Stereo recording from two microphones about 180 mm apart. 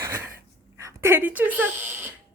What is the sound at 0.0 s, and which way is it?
Wheeze, 15° right (ahead or behind).